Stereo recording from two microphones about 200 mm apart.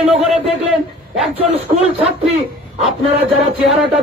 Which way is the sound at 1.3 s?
30° right (ahead or behind).